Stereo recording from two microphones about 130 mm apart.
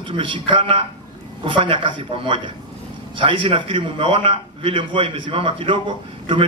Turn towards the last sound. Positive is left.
turn(degrees=-40)  # may be behind; listen again after turning